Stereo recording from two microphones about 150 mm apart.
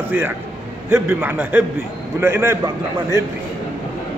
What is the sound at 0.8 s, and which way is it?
A man's voice, 15° right (ahead or behind).